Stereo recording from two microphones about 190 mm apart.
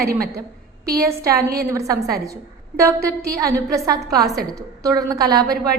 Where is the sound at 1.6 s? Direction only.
15° right (ahead or behind).